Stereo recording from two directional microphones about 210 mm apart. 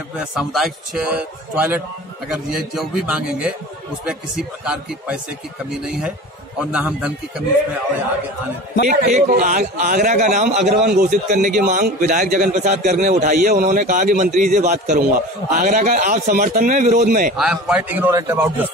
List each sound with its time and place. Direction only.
0.2 s a man's voice: centre (ahead or behind)
8.8 s a man's voice: 35° right (ahead or behind)
17.4 s a man's voice: 5° right (ahead or behind)